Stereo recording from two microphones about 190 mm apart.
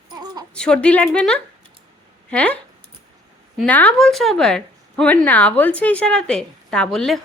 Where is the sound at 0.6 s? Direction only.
5° left (ahead or behind).